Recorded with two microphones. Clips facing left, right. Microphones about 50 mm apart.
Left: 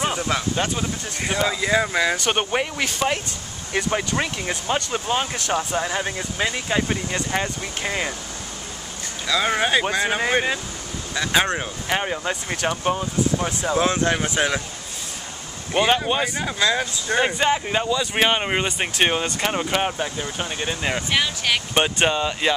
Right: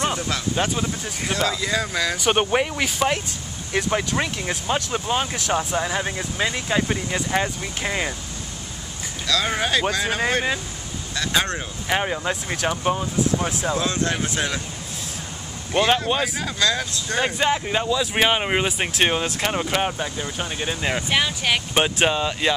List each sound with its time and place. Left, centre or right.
0.3 s speech: left
2.1 s speech: centre
9.3 s speech: centre
11.9 s speech: centre
13.7 s speech: left
15.7 s speech: centre
17.3 s speech: centre